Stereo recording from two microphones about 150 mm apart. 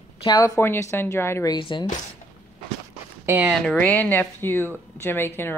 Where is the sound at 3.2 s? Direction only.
10° right (ahead or behind).